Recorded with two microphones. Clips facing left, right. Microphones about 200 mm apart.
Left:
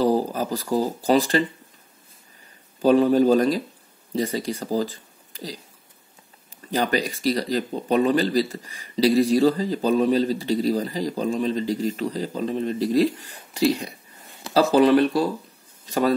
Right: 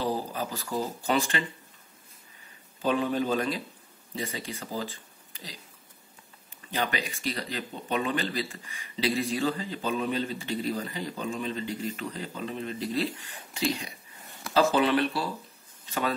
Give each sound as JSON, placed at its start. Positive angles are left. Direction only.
{"t": 0.0, "sound": "speech", "side_deg": 40}
{"t": 2.8, "sound": "speech", "side_deg": 40}
{"t": 6.7, "sound": "speech", "side_deg": 40}